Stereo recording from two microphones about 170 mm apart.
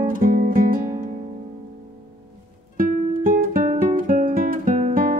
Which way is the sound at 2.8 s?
55° right (ahead or behind).